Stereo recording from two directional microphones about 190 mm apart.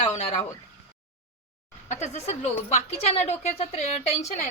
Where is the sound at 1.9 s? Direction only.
35° left (ahead or behind).